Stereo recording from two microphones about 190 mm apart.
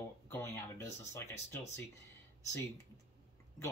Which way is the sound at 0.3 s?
15° left (ahead or behind).